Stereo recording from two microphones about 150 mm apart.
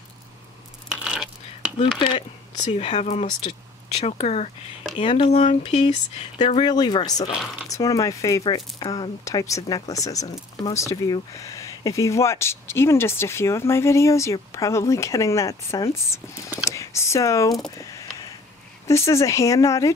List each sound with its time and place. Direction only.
0.8 s a sound: 5° right (ahead or behind)
1.8 s speech: 35° left (ahead or behind)
4.9 s speech: 35° left (ahead or behind)
6.6 s speech: 30° left (ahead or behind)
17.6 s a sound: 20° left (ahead or behind)
18.9 s speech: 20° left (ahead or behind)